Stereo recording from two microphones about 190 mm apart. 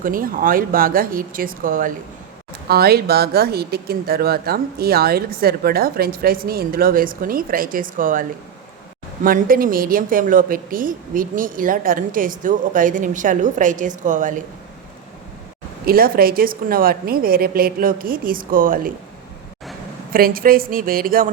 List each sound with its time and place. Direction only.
0.0 s speech: 45° right (ahead or behind)
15.9 s speech: 50° right (ahead or behind)
20.1 s speech: 50° right (ahead or behind)